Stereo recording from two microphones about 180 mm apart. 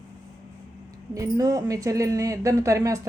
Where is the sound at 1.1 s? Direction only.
20° right (ahead or behind).